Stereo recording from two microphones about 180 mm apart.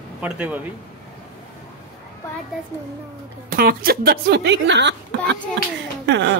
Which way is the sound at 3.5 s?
55° right (ahead or behind).